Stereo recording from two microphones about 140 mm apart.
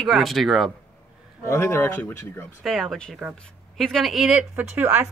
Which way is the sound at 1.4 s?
20° left (ahead or behind).